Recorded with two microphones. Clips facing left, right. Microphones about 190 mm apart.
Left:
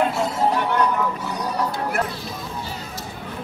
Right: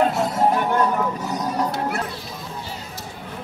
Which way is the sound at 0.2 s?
50° right (ahead or behind).